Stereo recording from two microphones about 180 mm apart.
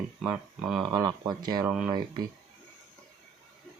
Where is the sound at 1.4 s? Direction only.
20° right (ahead or behind).